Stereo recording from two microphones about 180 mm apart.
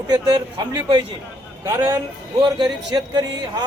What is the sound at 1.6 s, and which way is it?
A man's voice, 15° right (ahead or behind).